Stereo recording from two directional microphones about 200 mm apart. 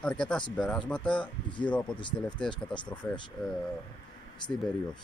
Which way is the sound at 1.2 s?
25° left (ahead or behind).